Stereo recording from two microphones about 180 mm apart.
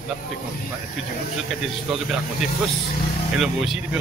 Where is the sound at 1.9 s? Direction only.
Centre (ahead or behind).